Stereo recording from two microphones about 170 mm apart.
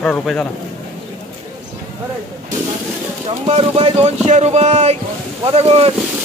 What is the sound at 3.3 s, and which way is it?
Speech, 35° right (ahead or behind).